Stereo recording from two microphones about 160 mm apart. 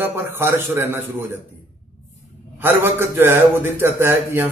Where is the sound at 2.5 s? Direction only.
15° right (ahead or behind).